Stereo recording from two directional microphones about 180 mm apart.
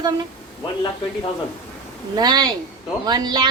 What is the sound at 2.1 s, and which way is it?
A woman's voice, 20° right (ahead or behind).